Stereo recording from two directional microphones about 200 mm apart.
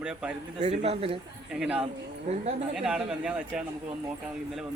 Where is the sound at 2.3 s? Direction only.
35° right (ahead or behind).